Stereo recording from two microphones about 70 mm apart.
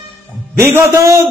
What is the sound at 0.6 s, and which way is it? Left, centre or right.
Speech, right.